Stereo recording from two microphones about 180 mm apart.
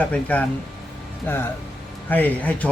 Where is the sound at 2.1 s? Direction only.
10° left (ahead or behind).